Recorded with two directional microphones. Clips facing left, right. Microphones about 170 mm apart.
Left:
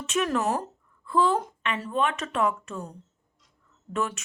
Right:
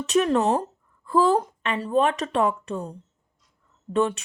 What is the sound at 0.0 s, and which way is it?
A woman's voice, 35° right (ahead or behind).